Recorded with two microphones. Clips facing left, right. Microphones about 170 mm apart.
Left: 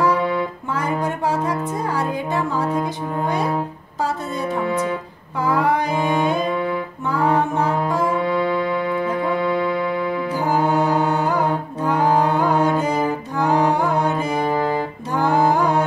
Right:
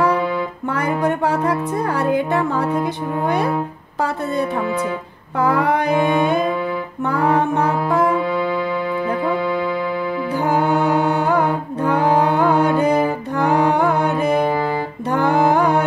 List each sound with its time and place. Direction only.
0.7 s music: 60° right (ahead or behind)
5.4 s music: 60° right (ahead or behind)
8.2 s music: centre (ahead or behind)
11.2 s music: 60° right (ahead or behind)